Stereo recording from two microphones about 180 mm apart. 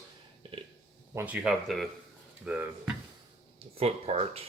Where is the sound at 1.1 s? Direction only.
10° right (ahead or behind).